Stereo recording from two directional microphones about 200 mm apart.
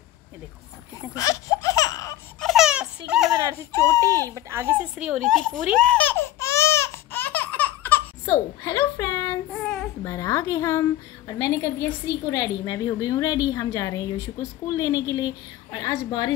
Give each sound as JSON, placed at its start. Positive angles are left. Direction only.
{"t": 1.1, "sound": "baby laughter", "side_deg": 15}
{"t": 2.4, "sound": "a sound", "side_deg": 0}
{"t": 3.7, "sound": "a woman's voice", "side_deg": 15}
{"t": 4.4, "sound": "baby laughter", "side_deg": -15}
{"t": 9.5, "sound": "child singing", "side_deg": 5}
{"t": 10.0, "sound": "a woman's voice", "side_deg": 15}